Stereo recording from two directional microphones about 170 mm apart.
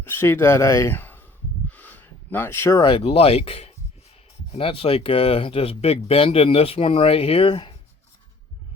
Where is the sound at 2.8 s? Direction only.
30° left (ahead or behind).